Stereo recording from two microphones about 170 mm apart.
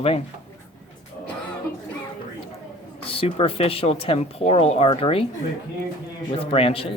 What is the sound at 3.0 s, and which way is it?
Speech, 35° left (ahead or behind).